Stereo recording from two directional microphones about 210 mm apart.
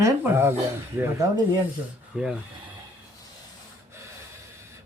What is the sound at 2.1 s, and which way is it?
Speech, 5° right (ahead or behind).